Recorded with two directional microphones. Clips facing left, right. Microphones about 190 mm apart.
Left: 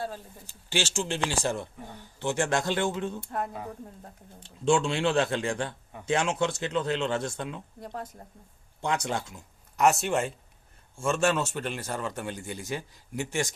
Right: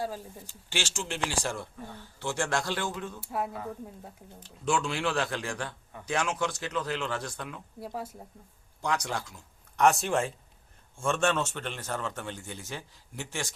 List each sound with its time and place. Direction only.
0.7 s speech: 20° left (ahead or behind)
3.2 s speech: 5° right (ahead or behind)
4.4 s speech: 25° left (ahead or behind)
7.8 s speech: 5° right (ahead or behind)
8.8 s speech: 25° left (ahead or behind)
9.7 s a man's voice: 5° left (ahead or behind)